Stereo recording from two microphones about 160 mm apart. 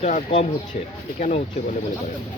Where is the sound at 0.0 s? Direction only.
40° left (ahead or behind).